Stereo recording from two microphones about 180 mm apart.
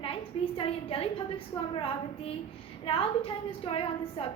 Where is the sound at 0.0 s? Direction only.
30° left (ahead or behind).